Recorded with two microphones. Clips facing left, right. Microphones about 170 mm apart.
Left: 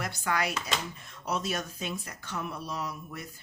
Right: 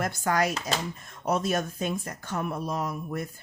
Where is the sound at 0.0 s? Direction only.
45° right (ahead or behind).